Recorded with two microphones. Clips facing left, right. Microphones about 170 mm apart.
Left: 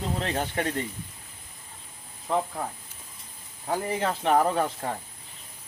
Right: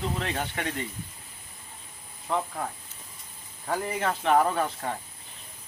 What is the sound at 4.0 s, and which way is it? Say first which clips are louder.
Speech: even; 30° left (ahead or behind).